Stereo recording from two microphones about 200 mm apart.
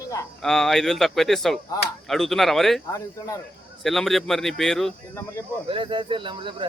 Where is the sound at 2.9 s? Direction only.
15° left (ahead or behind).